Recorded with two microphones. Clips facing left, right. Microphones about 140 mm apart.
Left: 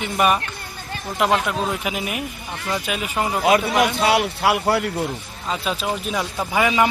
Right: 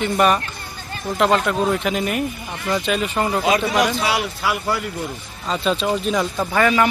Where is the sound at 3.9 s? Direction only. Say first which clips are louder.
Left 3 dB; 55° left (ahead or behind).